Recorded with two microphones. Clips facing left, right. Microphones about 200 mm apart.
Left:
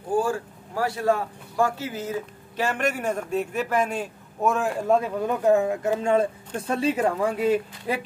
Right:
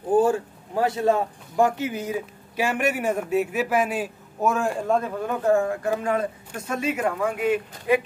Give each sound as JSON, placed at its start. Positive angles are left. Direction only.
{"t": 0.1, "sound": "speech", "side_deg": -20}
{"t": 5.2, "sound": "speech", "side_deg": 20}